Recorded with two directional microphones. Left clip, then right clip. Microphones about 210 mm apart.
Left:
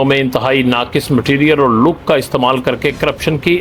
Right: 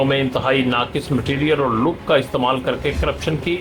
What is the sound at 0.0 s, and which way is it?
Speech, 35° left (ahead or behind).